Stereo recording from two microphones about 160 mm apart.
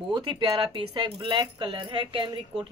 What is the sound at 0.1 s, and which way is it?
Speech, 30° right (ahead or behind).